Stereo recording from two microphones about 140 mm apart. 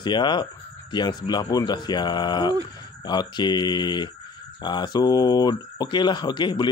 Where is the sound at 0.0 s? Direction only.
35° left (ahead or behind).